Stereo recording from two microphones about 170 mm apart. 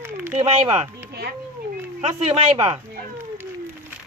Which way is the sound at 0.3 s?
40° right (ahead or behind).